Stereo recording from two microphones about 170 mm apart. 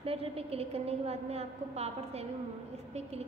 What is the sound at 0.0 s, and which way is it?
A woman's voice, 35° right (ahead or behind).